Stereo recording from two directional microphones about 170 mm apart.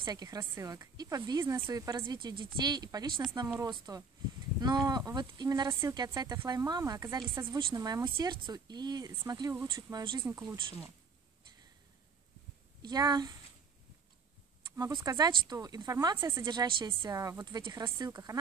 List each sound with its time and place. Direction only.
0.0 s speech: 20° right (ahead or behind)
12.8 s speech: 25° right (ahead or behind)
14.8 s speech: 25° right (ahead or behind)